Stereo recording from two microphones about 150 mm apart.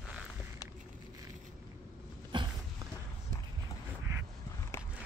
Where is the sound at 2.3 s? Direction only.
30° right (ahead or behind).